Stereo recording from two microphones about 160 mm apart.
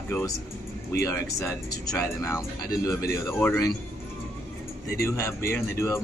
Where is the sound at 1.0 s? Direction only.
20° left (ahead or behind).